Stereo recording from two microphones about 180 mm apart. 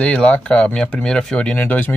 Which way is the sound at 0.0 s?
5° left (ahead or behind).